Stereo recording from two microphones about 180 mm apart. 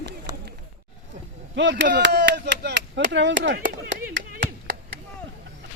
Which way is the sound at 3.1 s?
90° right.